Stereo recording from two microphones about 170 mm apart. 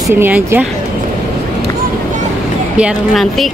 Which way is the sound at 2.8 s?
Centre (ahead or behind).